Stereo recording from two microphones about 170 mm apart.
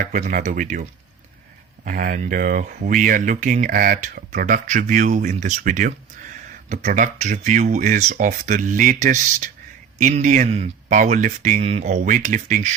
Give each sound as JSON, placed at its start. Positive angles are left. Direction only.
{"t": 0.0, "sound": "speech", "side_deg": -55}